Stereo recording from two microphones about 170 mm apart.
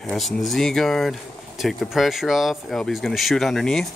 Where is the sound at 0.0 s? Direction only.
Centre (ahead or behind).